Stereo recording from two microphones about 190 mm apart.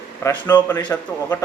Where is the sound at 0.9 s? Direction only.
10° left (ahead or behind).